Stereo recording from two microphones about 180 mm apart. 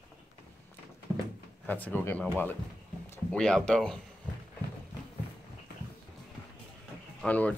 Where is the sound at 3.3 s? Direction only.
5° left (ahead or behind).